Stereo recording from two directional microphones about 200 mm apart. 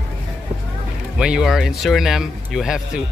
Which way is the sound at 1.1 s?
5° right (ahead or behind).